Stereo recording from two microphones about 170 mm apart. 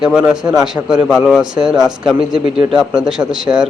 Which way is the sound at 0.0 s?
5° right (ahead or behind).